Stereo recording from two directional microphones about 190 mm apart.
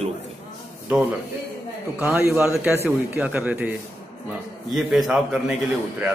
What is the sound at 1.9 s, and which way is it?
A man's voice, 10° right (ahead or behind).